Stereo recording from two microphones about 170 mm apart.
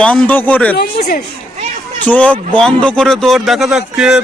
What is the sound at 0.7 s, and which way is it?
Speech, 65° left (ahead or behind).